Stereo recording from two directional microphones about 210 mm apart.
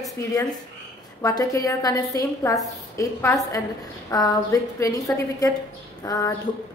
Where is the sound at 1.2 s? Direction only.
15° left (ahead or behind).